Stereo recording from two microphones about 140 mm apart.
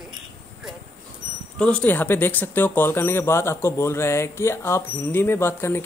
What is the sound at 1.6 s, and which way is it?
Speech, 10° left (ahead or behind).